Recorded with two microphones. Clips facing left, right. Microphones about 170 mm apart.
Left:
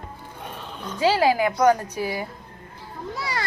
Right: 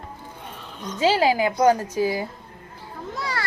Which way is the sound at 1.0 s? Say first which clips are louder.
Even; 20° right (ahead or behind).